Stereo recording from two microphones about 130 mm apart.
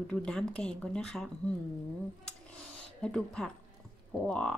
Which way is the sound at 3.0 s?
5° left (ahead or behind).